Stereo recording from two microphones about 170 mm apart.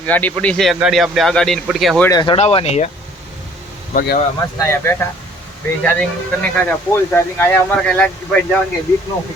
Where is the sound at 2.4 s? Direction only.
35° left (ahead or behind).